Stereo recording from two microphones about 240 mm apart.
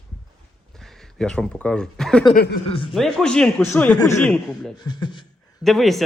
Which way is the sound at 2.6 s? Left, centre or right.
Left.